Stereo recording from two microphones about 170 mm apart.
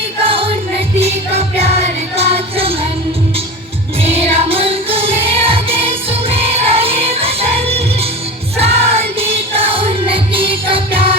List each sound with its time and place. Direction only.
0.2 s music: 30° right (ahead or behind)
4.0 s music: 35° right (ahead or behind)